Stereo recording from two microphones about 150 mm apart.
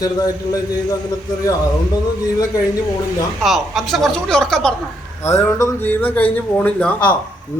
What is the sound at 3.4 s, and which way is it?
A woman's voice, centre (ahead or behind).